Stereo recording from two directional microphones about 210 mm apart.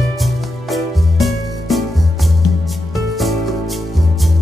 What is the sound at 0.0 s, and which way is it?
Music, centre (ahead or behind).